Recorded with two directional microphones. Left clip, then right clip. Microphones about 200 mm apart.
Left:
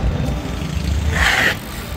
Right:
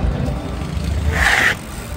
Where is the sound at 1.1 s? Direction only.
25° left (ahead or behind).